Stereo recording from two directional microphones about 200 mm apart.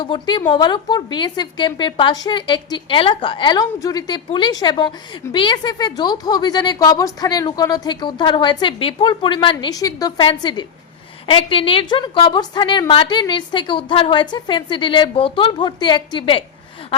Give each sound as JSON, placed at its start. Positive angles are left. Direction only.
{"t": 0.0, "sound": "a woman's voice", "side_deg": 25}